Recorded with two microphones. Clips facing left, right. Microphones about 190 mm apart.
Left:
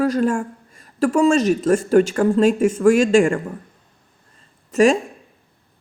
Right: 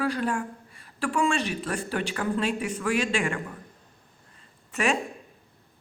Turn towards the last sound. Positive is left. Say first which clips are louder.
# left 11 dB
turn(degrees=40)  # may be behind; listen again after turning